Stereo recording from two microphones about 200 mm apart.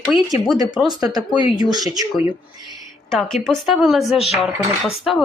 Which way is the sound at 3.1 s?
Centre (ahead or behind).